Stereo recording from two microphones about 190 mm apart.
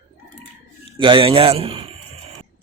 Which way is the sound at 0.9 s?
25° right (ahead or behind).